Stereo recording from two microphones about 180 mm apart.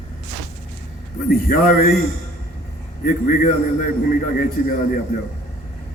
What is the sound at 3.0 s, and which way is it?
Speech, 45° left (ahead or behind).